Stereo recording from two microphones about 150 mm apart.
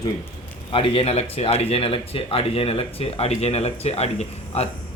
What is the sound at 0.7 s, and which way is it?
Speech, 40° left (ahead or behind).